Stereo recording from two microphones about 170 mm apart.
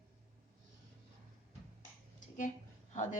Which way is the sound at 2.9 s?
45° left (ahead or behind).